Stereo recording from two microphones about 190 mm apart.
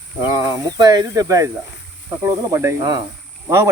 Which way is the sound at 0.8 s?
20° right (ahead or behind).